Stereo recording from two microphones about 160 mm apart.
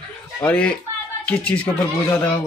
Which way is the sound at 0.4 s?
5° left (ahead or behind).